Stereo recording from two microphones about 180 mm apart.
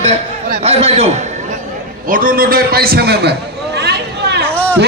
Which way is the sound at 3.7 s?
65° right (ahead or behind).